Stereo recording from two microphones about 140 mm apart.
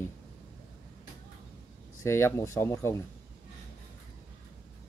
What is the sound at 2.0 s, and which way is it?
Speech, 20° left (ahead or behind).